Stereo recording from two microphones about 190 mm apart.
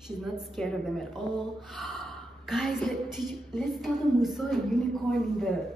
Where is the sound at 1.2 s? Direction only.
25° right (ahead or behind).